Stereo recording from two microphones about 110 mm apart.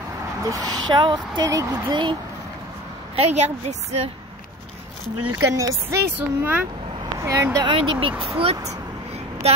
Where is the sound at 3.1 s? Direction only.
80° right.